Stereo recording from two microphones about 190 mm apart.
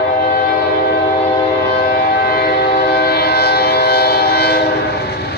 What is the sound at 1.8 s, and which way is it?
Train, 55° left (ahead or behind).